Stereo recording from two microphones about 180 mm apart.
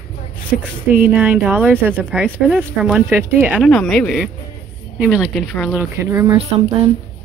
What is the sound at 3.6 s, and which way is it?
A woman's voice, centre (ahead or behind).